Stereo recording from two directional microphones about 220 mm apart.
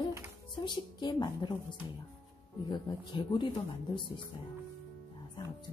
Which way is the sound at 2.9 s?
20° left (ahead or behind).